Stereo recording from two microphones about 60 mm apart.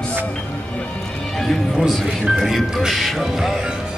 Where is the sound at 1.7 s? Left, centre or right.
Centre.